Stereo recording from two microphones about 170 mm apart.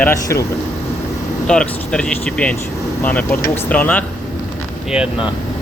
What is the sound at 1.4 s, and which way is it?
Speech, 5° left (ahead or behind).